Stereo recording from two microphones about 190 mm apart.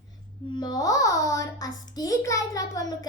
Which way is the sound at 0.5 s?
20° left (ahead or behind).